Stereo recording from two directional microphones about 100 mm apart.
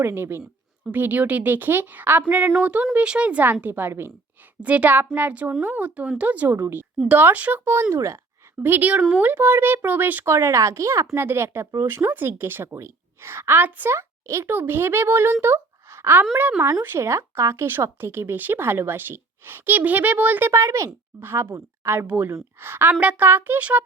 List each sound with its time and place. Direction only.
0.0 s a woman's voice: 25° right (ahead or behind)
8.6 s a woman's voice: 20° right (ahead or behind)